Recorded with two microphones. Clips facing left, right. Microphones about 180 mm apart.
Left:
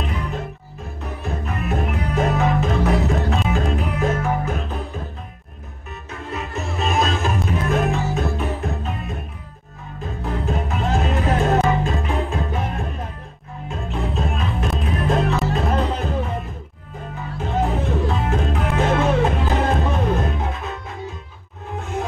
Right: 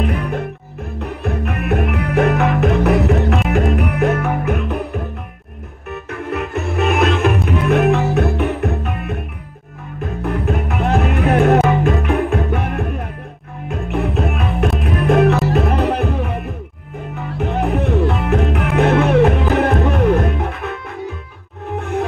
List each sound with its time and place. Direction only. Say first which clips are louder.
0.0 s music: right 7 dB; 60° right (ahead or behind)
10.2 s music: right 4 dB; 60° right (ahead or behind)
17.4 s music: right 4 dB; 65° right (ahead or behind)